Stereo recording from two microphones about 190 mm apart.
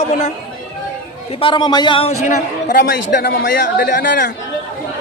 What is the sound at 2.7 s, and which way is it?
Speech, 50° left (ahead or behind).